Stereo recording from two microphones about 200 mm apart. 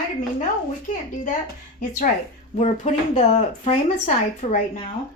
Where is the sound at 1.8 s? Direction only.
40° left (ahead or behind).